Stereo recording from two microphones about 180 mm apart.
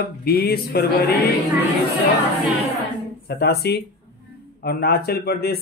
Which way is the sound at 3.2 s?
65° left (ahead or behind).